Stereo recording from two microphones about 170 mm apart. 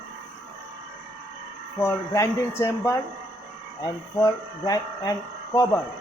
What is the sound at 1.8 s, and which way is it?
Speech, 15° left (ahead or behind).